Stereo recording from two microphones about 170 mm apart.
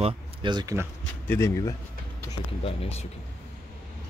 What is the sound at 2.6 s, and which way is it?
Speech, 35° left (ahead or behind).